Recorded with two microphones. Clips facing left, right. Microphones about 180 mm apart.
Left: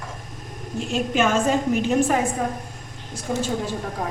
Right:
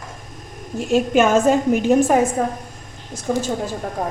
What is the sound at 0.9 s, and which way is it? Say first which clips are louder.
A woman's voice: right 6 dB; 45° right (ahead or behind).